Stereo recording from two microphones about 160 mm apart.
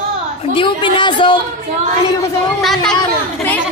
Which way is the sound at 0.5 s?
30° left (ahead or behind).